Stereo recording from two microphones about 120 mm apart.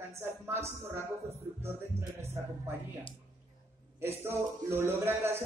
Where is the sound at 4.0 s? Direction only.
20° right (ahead or behind).